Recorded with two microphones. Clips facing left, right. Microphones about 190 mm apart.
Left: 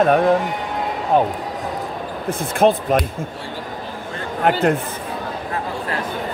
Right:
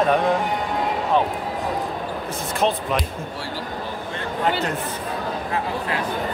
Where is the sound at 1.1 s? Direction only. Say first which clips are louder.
Left 4 dB; 45° left (ahead or behind).